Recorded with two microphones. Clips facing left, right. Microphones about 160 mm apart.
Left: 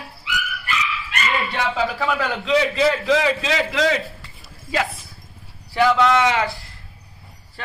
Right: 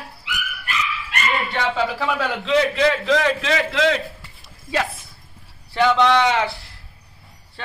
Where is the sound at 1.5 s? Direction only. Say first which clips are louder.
Right 1 dB; centre (ahead or behind).